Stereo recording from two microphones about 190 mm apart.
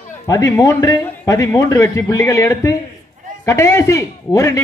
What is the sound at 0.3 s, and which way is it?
A man's voice, 15° left (ahead or behind).